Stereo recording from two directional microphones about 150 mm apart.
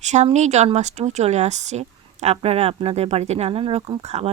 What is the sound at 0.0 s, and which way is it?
Speech, 50° right (ahead or behind).